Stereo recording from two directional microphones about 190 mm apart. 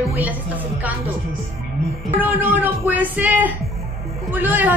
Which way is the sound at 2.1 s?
10° right (ahead or behind).